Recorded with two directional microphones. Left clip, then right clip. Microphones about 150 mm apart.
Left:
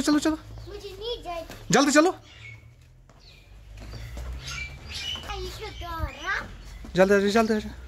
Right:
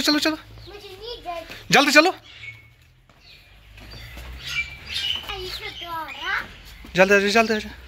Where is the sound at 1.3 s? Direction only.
20° left (ahead or behind).